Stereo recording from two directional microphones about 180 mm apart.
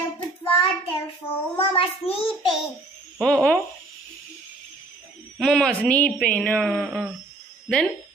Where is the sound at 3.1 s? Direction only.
5° left (ahead or behind).